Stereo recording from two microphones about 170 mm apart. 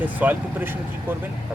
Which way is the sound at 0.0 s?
10° right (ahead or behind).